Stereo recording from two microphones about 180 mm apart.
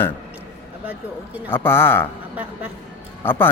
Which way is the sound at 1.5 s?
10° left (ahead or behind).